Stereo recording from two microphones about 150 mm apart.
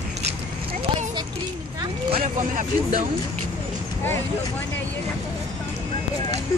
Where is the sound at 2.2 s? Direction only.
60° right (ahead or behind).